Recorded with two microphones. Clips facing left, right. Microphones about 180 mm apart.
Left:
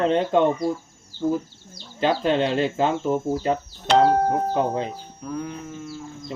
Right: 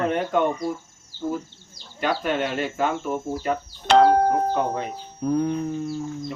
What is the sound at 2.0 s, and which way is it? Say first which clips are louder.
Speech: left 4 dB; 25° left (ahead or behind).